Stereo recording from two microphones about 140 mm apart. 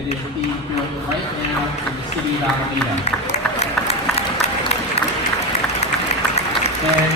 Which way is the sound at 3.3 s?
50° left (ahead or behind).